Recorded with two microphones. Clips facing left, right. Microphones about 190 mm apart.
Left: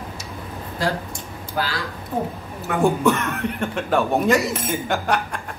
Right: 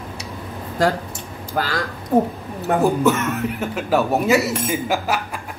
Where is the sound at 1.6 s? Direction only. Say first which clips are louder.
Right 3 dB; 50° right (ahead or behind).